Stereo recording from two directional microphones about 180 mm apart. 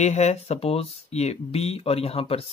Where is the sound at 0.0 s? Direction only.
40° left (ahead or behind).